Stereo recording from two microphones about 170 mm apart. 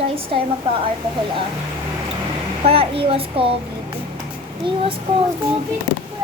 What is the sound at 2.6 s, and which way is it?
Speech, 35° right (ahead or behind).